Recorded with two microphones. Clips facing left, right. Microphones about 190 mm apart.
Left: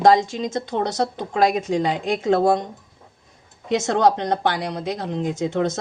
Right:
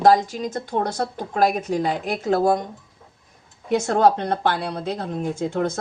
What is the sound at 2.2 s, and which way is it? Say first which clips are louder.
Speech: left 1 dB; 25° left (ahead or behind).